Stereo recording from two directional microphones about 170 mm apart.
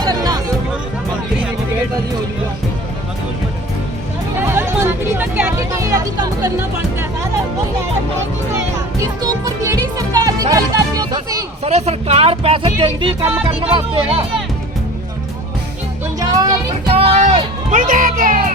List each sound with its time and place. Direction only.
0.0 s music: 20° right (ahead or behind)
4.4 s hubbub: 10° right (ahead or behind)
9.0 s music: 20° right (ahead or behind)
11.6 s speech: 40° right (ahead or behind)
16.2 s speech: 25° right (ahead or behind)
16.9 s speech: 35° right (ahead or behind)
17.7 s speech: 50° right (ahead or behind)